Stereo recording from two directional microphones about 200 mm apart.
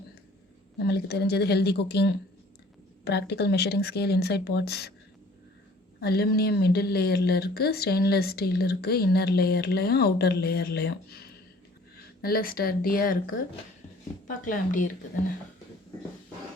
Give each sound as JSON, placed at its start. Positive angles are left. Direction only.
{"t": 0.8, "sound": "speech", "side_deg": 55}
{"t": 6.0, "sound": "speech", "side_deg": 50}